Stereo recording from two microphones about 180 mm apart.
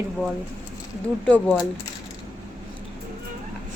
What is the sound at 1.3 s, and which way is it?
Speech, 5° left (ahead or behind).